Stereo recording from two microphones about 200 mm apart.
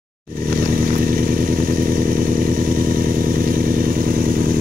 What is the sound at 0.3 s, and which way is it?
Motorcycle, 45° right (ahead or behind).